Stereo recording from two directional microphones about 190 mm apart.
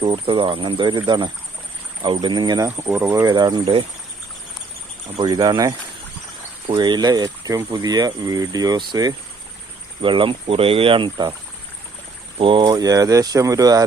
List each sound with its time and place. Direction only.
0.0 s speech: 25° right (ahead or behind)
5.1 s speech: 20° right (ahead or behind)
12.4 s speech: 25° right (ahead or behind)